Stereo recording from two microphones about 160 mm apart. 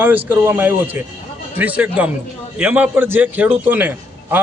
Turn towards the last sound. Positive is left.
turn(degrees=-10)  # may be behind; listen again after turning